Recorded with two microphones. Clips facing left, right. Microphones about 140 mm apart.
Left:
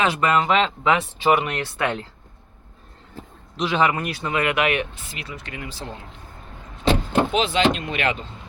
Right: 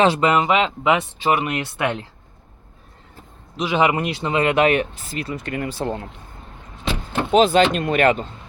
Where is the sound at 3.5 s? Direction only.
10° right (ahead or behind); by 5.9 s 55° right (ahead or behind).